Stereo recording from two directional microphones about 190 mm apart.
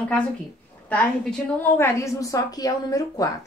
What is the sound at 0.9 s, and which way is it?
Speech, 5° left (ahead or behind).